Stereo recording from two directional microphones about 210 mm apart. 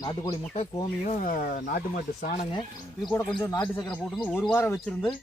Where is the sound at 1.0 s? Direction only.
35° left (ahead or behind).